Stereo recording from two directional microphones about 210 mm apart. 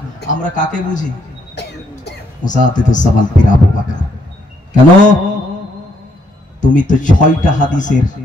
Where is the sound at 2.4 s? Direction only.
35° left (ahead or behind).